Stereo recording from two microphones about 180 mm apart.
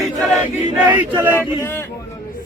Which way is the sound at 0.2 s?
Centre (ahead or behind).